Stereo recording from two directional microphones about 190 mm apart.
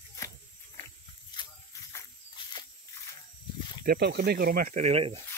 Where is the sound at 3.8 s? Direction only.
55° right (ahead or behind); by 5.1 s 35° right (ahead or behind).